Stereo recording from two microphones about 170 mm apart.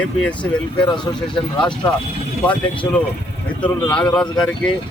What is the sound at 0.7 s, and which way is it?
Speech, 25° left (ahead or behind).